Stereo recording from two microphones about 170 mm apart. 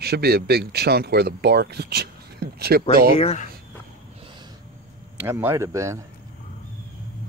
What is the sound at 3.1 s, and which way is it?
Speech, 35° left (ahead or behind).